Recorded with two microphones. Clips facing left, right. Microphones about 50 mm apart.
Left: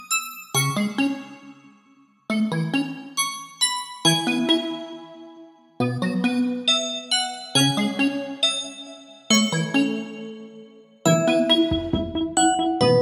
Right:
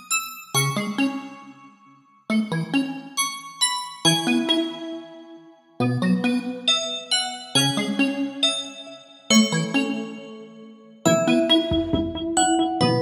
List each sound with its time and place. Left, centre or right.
0.1 s music: centre
2.2 s music: centre
5.8 s music: centre
8.1 s music: centre
9.3 s music: centre
11.1 s music: centre